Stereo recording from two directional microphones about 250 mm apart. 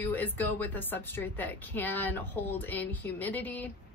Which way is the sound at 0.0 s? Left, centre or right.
Centre.